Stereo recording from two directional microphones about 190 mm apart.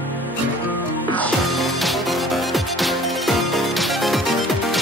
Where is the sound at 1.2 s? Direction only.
Centre (ahead or behind).